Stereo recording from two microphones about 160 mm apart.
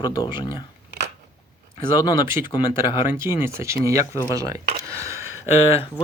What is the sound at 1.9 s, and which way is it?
Speech, 25° left (ahead or behind).